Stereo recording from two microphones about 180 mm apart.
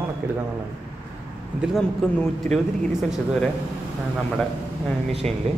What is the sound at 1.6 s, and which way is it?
Speech, centre (ahead or behind).